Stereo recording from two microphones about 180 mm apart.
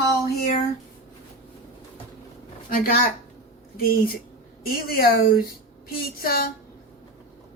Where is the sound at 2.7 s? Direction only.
55° left (ahead or behind).